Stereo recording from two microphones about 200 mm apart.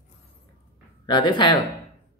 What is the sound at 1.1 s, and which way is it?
Speech, 25° left (ahead or behind).